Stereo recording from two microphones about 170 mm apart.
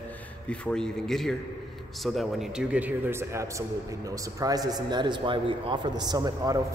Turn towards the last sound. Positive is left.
turn(degrees=-25)  # may be behind; listen again after turning